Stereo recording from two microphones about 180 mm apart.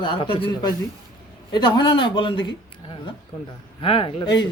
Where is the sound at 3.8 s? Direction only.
30° left (ahead or behind).